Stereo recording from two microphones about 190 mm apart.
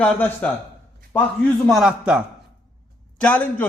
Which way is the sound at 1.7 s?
5° right (ahead or behind).